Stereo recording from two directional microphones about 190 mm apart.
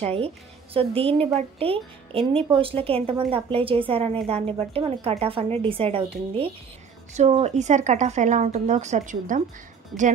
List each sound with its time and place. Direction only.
0.0 s speech: 30° right (ahead or behind)